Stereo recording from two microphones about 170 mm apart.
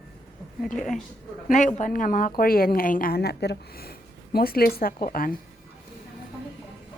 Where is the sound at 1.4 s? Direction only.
45° left (ahead or behind).